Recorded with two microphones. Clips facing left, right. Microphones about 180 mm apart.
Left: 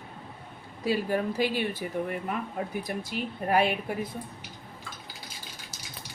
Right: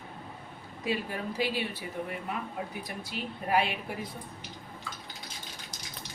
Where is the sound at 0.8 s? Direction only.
40° left (ahead or behind).